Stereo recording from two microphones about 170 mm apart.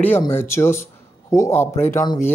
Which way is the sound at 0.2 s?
15° left (ahead or behind).